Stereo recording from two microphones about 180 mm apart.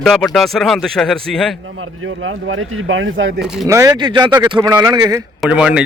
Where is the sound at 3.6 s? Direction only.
20° right (ahead or behind).